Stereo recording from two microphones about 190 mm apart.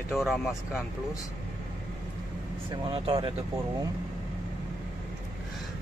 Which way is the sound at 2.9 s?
30° right (ahead or behind).